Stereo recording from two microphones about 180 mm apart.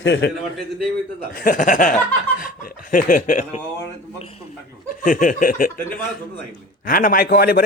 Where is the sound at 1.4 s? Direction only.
50° left (ahead or behind).